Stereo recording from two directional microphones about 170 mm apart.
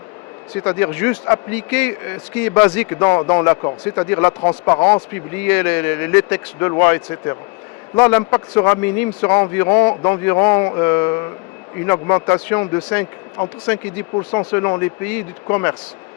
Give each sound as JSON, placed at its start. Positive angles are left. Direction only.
{"t": 0.5, "sound": "speech", "side_deg": 15}